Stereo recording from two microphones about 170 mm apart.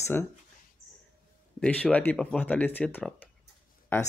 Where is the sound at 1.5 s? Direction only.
5° left (ahead or behind).